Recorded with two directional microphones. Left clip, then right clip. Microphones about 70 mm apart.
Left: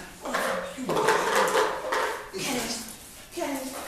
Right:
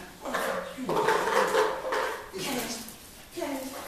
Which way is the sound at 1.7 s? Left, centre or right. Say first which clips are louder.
Left 2 dB; centre.